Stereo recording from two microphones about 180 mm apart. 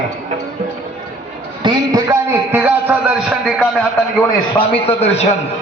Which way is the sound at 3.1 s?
Centre (ahead or behind).